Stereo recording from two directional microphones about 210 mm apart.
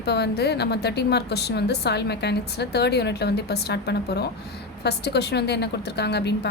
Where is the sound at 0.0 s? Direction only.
50° left (ahead or behind).